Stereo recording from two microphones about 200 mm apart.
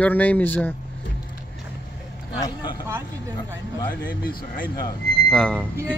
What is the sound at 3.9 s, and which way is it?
Speech, 45° left (ahead or behind).